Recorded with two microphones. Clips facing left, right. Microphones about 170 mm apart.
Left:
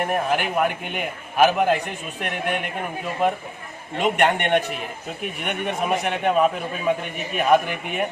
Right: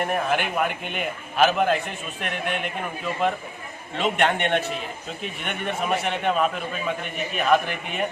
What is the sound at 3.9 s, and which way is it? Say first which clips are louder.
Speech: left 3 dB; 15° left (ahead or behind).